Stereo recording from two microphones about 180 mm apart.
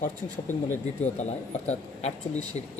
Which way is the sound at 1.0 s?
40° left (ahead or behind).